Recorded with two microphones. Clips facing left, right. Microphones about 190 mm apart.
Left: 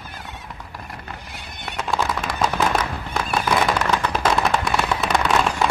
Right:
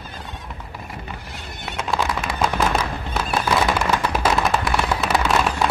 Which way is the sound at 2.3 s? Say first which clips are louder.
Even; 10° right (ahead or behind).